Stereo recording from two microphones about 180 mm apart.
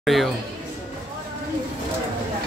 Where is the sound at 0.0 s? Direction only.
Centre (ahead or behind).